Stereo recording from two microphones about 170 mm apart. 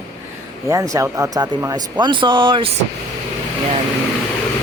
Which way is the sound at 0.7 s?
20° right (ahead or behind).